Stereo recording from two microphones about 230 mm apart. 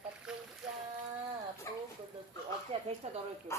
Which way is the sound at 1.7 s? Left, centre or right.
Centre.